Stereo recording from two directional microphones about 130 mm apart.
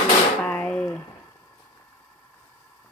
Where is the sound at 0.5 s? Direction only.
10° left (ahead or behind).